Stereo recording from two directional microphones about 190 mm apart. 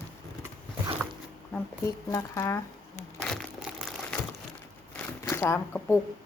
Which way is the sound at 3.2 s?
Centre (ahead or behind).